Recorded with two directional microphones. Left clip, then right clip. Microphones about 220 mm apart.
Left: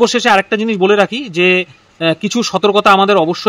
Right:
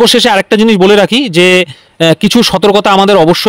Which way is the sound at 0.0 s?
45° right (ahead or behind).